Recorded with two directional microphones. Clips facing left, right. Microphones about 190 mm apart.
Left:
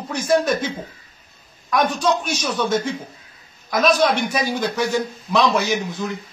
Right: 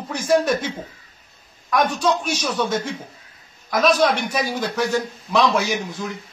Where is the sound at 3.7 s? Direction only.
Centre (ahead or behind).